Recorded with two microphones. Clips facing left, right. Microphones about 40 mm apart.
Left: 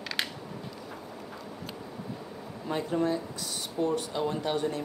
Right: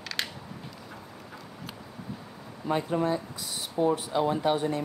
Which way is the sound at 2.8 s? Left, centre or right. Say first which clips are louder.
Left 1 dB; centre.